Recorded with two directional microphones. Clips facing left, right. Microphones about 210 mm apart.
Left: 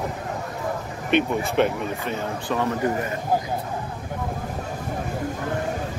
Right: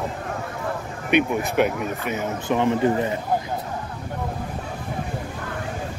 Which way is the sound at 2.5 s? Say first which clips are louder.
Right 4 dB; 20° right (ahead or behind).